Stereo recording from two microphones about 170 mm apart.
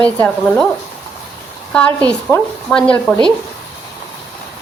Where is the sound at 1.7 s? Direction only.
5° left (ahead or behind).